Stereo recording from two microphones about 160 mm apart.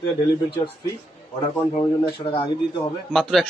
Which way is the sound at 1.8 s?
35° left (ahead or behind).